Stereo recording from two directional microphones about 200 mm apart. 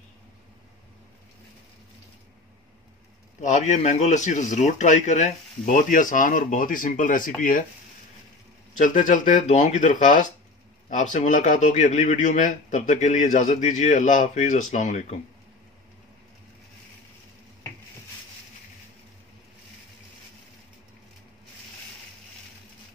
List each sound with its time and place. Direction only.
3.3 s a man's voice: 35° left (ahead or behind)
8.7 s a man's voice: 40° left (ahead or behind)